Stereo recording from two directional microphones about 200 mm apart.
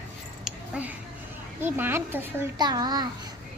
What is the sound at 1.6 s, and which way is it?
Speech, 10° right (ahead or behind).